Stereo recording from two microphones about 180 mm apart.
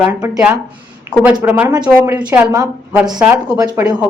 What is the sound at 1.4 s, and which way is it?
A woman's voice, 10° right (ahead or behind).